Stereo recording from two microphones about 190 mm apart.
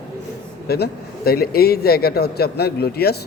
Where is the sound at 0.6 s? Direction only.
55° left (ahead or behind).